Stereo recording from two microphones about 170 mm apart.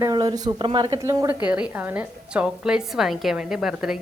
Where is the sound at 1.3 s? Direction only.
5° right (ahead or behind).